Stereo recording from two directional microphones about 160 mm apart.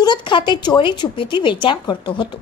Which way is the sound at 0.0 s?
30° left (ahead or behind).